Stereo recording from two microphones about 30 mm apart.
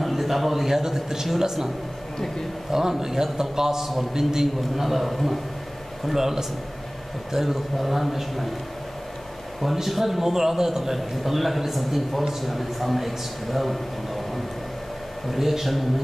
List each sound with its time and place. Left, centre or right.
0.0 s a man's voice: centre
2.7 s a man's voice: centre
6.1 s a man's voice: centre
9.8 s a man's voice: centre